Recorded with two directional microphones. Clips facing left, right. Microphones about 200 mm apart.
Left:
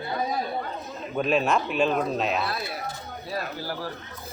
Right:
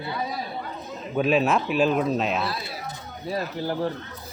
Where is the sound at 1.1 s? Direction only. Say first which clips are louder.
Right 2 dB; centre (ahead or behind).